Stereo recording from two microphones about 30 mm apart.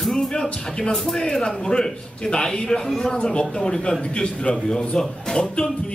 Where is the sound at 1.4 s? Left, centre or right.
Left.